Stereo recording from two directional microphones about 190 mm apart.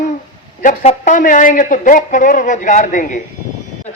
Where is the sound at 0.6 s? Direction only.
40° left (ahead or behind).